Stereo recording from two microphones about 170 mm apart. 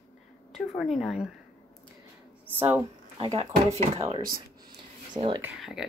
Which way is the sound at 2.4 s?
15° right (ahead or behind).